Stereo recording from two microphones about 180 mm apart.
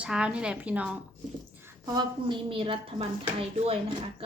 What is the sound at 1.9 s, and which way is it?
A woman's voice, 25° right (ahead or behind).